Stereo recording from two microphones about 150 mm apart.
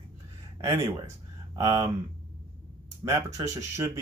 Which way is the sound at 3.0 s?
20° right (ahead or behind).